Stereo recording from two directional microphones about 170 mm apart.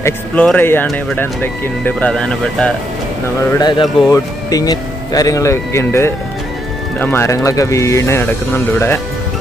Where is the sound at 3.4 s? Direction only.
25° left (ahead or behind).